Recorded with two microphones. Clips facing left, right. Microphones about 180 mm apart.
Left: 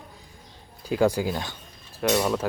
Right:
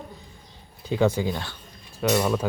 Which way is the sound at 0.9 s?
10° left (ahead or behind).